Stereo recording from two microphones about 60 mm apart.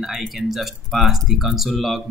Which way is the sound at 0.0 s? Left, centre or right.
Centre.